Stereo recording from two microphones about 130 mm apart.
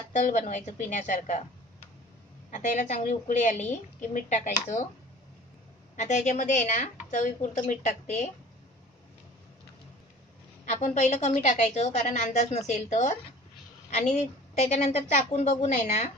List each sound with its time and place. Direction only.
0.1 s speech: 70° left (ahead or behind)
2.5 s speech: 65° left (ahead or behind)
5.9 s speech: 65° left (ahead or behind)
10.6 s a woman's voice: 65° left (ahead or behind)